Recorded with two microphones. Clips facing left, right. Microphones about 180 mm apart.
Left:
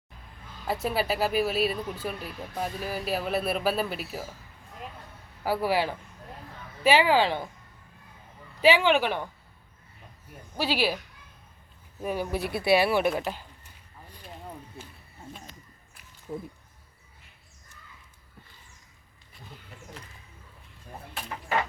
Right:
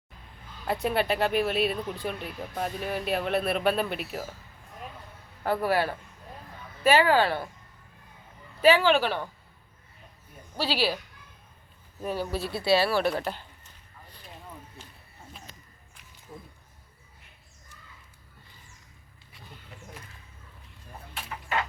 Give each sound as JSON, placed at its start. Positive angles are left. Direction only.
{"t": 0.7, "sound": "speech", "side_deg": 0}
{"t": 5.4, "sound": "speech", "side_deg": 5}
{"t": 8.6, "sound": "speech", "side_deg": 15}
{"t": 10.6, "sound": "speech", "side_deg": 15}
{"t": 12.0, "sound": "speech", "side_deg": 15}